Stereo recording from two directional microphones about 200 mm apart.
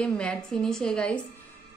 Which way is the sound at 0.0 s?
5° left (ahead or behind).